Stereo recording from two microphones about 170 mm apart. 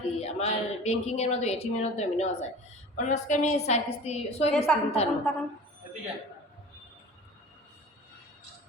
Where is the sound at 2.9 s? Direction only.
45° left (ahead or behind).